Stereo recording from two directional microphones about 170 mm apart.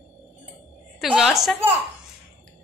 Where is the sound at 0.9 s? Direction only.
5° right (ahead or behind).